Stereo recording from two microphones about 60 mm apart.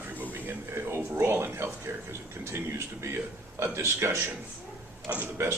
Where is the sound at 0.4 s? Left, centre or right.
Right.